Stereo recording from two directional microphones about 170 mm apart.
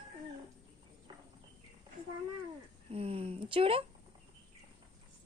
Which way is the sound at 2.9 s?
35° right (ahead or behind).